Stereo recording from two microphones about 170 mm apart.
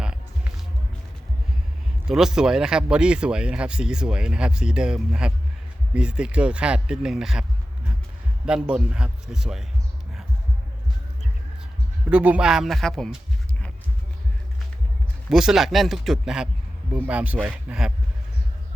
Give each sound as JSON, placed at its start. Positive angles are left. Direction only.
{"t": 2.0, "sound": "speech", "side_deg": -5}
{"t": 8.4, "sound": "speech", "side_deg": -5}
{"t": 12.1, "sound": "speech", "side_deg": -5}
{"t": 15.3, "sound": "speech", "side_deg": -5}